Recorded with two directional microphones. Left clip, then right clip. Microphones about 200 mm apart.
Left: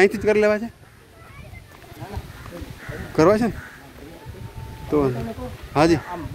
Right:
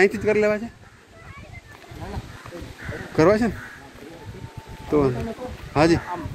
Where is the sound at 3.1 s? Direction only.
10° left (ahead or behind).